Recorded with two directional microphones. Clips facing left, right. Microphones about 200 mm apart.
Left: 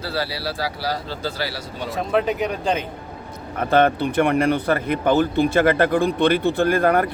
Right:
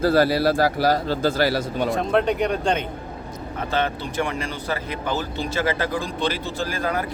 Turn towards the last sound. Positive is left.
turn(degrees=60)  # may be behind; listen again after turning